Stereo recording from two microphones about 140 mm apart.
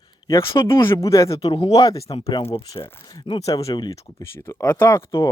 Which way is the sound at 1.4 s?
40° left (ahead or behind).